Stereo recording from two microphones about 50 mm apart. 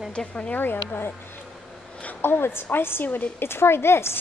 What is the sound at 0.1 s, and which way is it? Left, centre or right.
Speech, centre.